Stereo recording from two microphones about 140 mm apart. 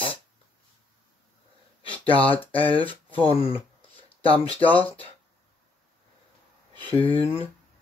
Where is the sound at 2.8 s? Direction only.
10° left (ahead or behind).